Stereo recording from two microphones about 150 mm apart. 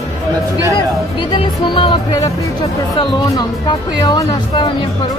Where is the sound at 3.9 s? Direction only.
30° left (ahead or behind).